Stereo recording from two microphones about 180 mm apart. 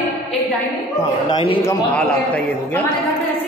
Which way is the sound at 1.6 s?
10° left (ahead or behind).